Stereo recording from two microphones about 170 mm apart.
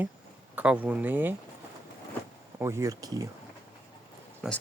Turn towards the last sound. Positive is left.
turn(degrees=-5)  # may be behind; listen again after turning